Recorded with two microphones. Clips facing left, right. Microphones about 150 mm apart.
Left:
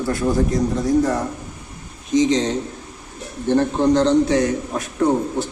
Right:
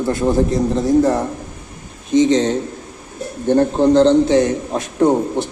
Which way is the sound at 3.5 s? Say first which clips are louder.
Right 4 dB; 35° right (ahead or behind).